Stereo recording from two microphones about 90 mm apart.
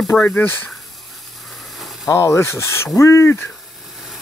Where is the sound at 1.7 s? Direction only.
Centre (ahead or behind).